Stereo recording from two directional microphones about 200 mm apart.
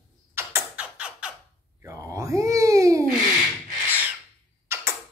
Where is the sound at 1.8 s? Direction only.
15° right (ahead or behind).